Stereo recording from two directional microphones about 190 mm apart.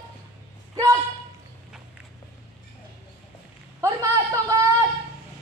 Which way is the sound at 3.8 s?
15° right (ahead or behind).